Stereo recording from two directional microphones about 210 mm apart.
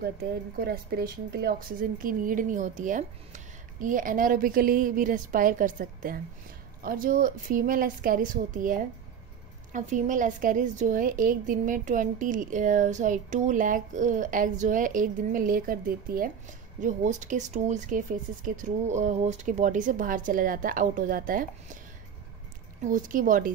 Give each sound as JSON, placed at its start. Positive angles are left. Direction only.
{"t": 0.6, "sound": "a woman's voice", "side_deg": -50}
{"t": 22.8, "sound": "a woman's voice", "side_deg": -40}